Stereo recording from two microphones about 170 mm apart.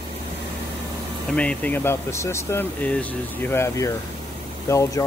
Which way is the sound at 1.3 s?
5° left (ahead or behind).